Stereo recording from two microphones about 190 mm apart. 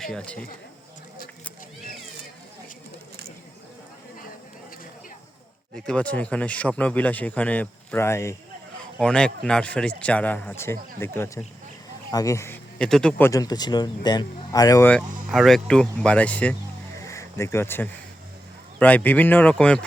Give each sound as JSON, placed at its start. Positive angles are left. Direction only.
{"t": 0.0, "sound": "speech", "side_deg": 0}
{"t": 5.8, "sound": "speech", "side_deg": 5}
{"t": 9.0, "sound": "speech", "side_deg": 5}
{"t": 12.8, "sound": "speech", "side_deg": 5}
{"t": 14.8, "sound": "speech", "side_deg": 0}
{"t": 17.0, "sound": "a sound", "side_deg": 15}
{"t": 18.8, "sound": "speech", "side_deg": 10}